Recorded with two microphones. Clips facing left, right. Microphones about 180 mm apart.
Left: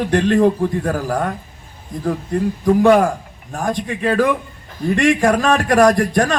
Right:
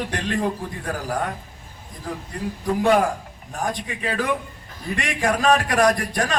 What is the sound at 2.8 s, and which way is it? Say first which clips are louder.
A man's voice: left 4 dB; 45° left (ahead or behind).